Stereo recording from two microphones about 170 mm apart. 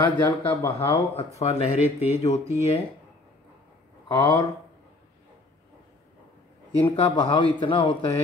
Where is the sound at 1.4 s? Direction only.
40° left (ahead or behind).